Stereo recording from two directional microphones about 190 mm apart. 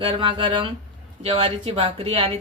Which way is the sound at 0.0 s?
25° right (ahead or behind).